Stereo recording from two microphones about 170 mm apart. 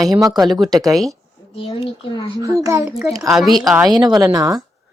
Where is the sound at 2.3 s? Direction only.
20° right (ahead or behind).